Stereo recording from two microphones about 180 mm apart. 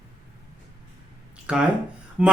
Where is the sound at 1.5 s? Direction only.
5° right (ahead or behind).